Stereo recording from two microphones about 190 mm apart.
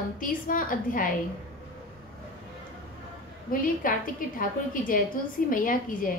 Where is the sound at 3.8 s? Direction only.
45° left (ahead or behind).